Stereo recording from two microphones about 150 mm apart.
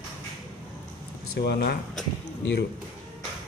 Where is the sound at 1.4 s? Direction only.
90° left.